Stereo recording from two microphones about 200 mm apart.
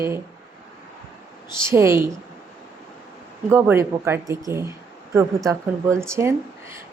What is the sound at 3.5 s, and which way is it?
Speech, 15° right (ahead or behind).